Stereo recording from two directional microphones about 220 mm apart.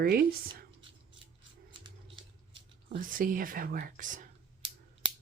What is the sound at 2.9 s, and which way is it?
Speech, 40° right (ahead or behind).